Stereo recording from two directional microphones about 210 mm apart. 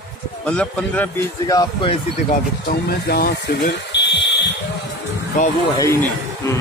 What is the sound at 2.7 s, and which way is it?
Speech, 45° left (ahead or behind).